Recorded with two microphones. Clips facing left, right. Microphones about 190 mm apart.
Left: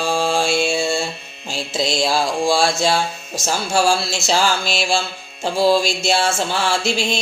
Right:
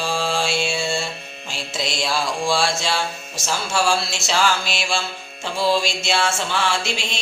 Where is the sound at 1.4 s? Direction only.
35° left (ahead or behind).